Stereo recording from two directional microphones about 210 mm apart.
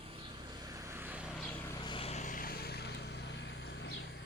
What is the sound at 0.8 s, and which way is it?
Vehicle, 10° right (ahead or behind).